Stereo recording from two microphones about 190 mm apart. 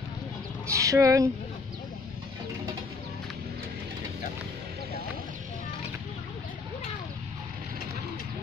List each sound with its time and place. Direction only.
0.7 s speech: 15° right (ahead or behind)